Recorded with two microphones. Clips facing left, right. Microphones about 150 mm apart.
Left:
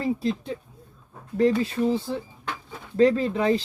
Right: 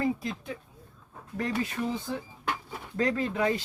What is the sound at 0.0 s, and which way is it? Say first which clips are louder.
A man's voice: left 4 dB; 30° left (ahead or behind).